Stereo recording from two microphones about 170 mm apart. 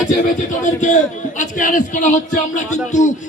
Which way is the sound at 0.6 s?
45° left (ahead or behind).